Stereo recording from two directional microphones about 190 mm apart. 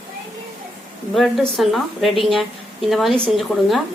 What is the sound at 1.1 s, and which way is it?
A woman's voice, centre (ahead or behind).